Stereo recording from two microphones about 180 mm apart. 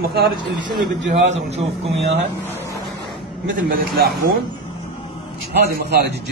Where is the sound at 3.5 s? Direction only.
55° right (ahead or behind).